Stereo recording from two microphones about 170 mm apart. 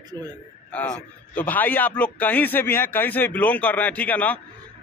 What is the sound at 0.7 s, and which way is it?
A man's voice, 5° left (ahead or behind).